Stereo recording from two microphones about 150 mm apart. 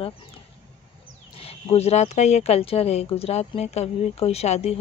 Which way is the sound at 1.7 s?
45° left (ahead or behind).